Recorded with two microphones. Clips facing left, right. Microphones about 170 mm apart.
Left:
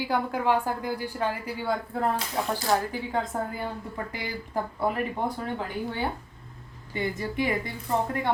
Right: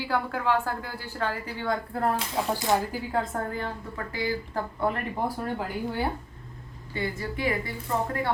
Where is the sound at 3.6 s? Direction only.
15° left (ahead or behind).